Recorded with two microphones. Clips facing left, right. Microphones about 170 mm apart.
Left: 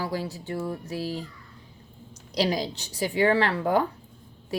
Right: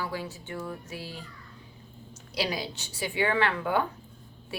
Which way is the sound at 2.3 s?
35° left (ahead or behind).